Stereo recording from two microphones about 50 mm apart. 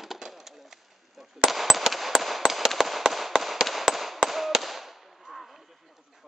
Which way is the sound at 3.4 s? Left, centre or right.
Centre.